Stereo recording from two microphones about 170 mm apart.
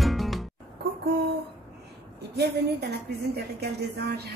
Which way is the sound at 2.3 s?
70° right (ahead or behind).